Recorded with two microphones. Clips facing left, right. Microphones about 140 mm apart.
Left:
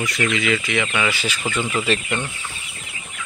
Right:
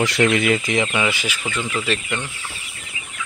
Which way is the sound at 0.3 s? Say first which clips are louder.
Right 3 dB; 45° right (ahead or behind).